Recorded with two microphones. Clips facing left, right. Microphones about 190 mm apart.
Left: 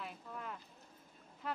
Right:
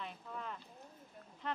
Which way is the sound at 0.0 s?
5° left (ahead or behind).